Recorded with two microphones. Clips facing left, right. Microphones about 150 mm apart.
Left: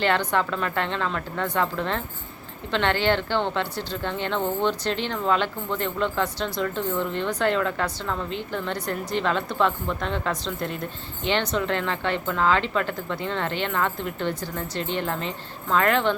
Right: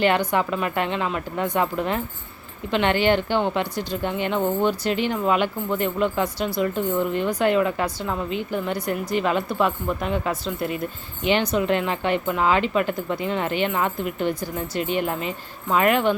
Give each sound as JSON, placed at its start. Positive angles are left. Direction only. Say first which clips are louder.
{"t": 0.0, "sound": "speech", "louder": "right 3 dB", "side_deg": -10}